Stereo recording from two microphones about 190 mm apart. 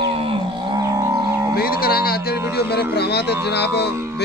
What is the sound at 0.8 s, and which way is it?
Whale vocalization, 20° right (ahead or behind).